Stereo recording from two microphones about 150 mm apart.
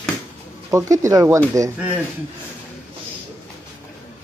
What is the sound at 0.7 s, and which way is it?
Speech, 20° right (ahead or behind).